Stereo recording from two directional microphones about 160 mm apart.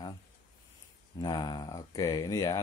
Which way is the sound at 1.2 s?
25° left (ahead or behind).